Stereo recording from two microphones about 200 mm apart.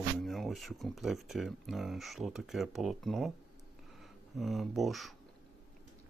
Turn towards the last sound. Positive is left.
turn(degrees=0)  # may be behind; listen again after turning